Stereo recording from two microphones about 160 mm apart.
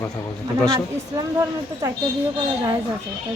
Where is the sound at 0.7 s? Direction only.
20° right (ahead or behind).